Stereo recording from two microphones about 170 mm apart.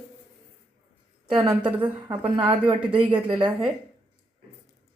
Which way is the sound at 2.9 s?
30° right (ahead or behind).